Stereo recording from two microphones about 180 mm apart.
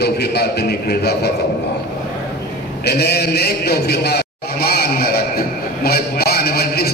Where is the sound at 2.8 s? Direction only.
65° left (ahead or behind).